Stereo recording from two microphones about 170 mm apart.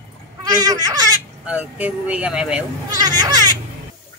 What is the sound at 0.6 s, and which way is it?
Baby cry, 20° right (ahead or behind).